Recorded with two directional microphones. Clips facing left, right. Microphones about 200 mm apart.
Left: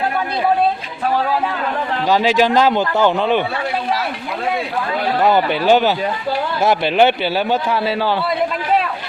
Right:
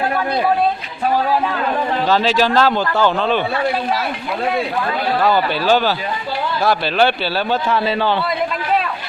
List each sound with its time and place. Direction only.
2.0 s a man's voice: 15° left (ahead or behind)
5.2 s a man's voice: 20° left (ahead or behind)